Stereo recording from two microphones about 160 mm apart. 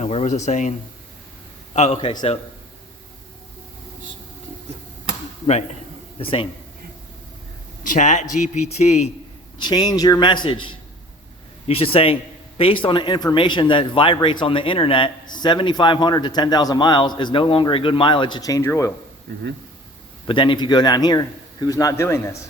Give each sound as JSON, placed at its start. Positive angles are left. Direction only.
{"t": 0.0, "sound": "speech", "side_deg": 45}
{"t": 1.7, "sound": "a man's voice", "side_deg": 45}
{"t": 5.5, "sound": "speech", "side_deg": 45}
{"t": 6.1, "sound": "a man's voice", "side_deg": 35}
{"t": 7.9, "sound": "speech", "side_deg": 50}
{"t": 9.6, "sound": "a man's voice", "side_deg": 25}
{"t": 20.2, "sound": "speech", "side_deg": 30}